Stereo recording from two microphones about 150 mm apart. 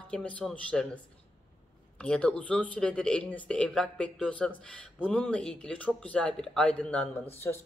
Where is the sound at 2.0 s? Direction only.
5° left (ahead or behind).